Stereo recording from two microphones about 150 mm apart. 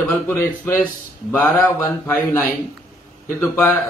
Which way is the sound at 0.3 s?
15° left (ahead or behind).